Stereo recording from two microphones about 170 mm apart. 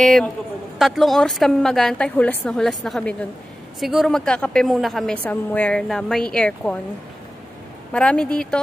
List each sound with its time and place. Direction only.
0.0 s a woman's voice: 5° left (ahead or behind)
7.9 s a woman's voice: 5° left (ahead or behind)